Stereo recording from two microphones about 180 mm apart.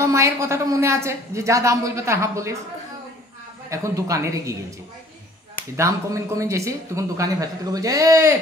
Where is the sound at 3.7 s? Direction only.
20° right (ahead or behind).